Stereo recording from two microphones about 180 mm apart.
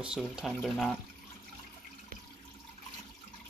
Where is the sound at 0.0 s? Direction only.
5° right (ahead or behind).